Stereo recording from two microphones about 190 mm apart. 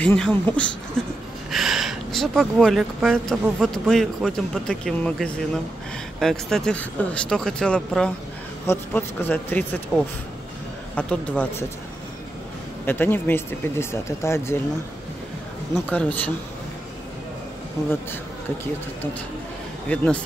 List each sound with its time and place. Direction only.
0.0 s speech: 10° left (ahead or behind)
12.8 s speech: 10° left (ahead or behind)
15.7 s speech: 5° left (ahead or behind)
19.9 s speech: 10° left (ahead or behind)